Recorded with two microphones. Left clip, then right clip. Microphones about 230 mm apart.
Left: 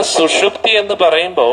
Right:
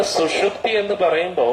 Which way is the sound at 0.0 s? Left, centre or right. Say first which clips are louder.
Left 6 dB; left.